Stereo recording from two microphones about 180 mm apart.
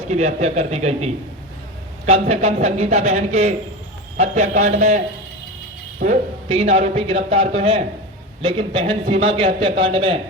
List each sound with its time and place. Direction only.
0.1 s a man's voice: 40° right (ahead or behind)
6.0 s speech: 55° right (ahead or behind)
6.5 s a man's voice: 35° right (ahead or behind)